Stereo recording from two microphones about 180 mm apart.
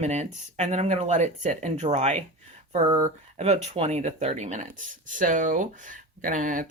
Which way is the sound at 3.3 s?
35° right (ahead or behind).